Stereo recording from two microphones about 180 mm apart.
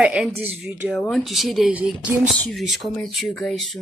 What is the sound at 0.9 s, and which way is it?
Speech, 5° left (ahead or behind).